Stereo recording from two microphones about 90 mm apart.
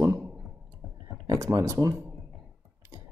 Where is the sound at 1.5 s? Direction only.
35° right (ahead or behind).